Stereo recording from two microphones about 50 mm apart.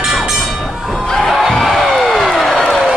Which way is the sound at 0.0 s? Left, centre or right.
Centre.